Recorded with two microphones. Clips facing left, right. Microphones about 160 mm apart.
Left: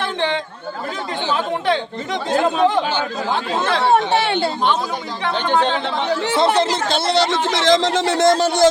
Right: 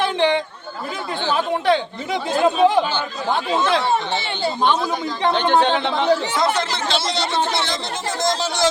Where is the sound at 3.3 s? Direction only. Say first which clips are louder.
Right 3 dB; 60° left (ahead or behind).